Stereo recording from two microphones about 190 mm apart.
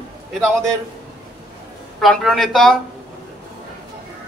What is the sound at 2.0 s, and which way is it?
Speech, centre (ahead or behind).